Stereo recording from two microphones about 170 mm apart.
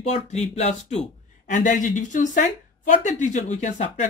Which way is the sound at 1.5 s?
50° left (ahead or behind).